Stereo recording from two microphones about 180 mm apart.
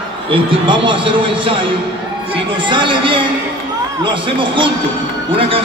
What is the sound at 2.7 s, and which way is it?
A man's voice, 25° right (ahead or behind).